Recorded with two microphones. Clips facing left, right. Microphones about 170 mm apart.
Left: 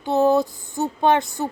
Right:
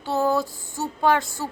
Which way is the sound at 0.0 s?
20° left (ahead or behind).